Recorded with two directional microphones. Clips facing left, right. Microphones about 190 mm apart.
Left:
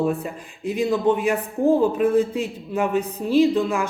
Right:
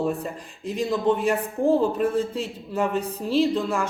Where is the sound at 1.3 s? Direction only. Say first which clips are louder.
Left 2 dB; 15° left (ahead or behind).